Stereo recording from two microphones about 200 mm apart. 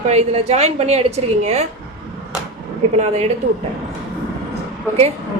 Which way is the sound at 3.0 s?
35° right (ahead or behind).